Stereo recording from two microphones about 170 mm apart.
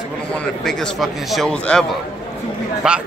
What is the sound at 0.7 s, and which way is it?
A man's voice, centre (ahead or behind).